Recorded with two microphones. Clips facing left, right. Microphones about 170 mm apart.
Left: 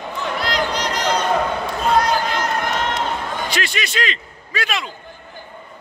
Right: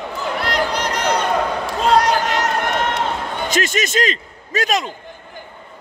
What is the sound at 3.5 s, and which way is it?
A man's voice, 45° right (ahead or behind).